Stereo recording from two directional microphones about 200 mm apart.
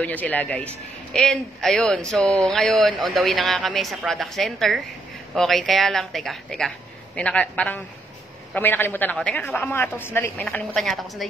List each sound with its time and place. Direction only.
0.0 s a woman's voice: 10° left (ahead or behind)